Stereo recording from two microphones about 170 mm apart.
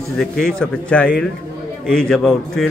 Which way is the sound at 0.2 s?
Centre (ahead or behind).